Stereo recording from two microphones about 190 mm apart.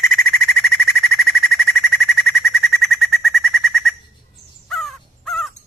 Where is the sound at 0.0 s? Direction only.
Centre (ahead or behind).